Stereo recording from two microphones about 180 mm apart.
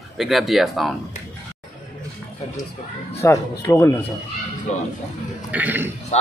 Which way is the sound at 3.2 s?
15° left (ahead or behind).